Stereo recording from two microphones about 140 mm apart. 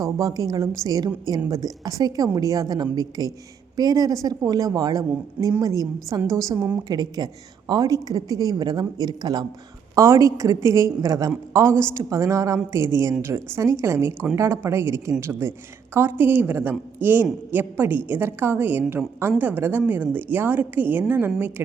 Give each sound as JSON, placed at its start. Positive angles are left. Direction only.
{"t": 0.0, "sound": "a woman's voice", "side_deg": -25}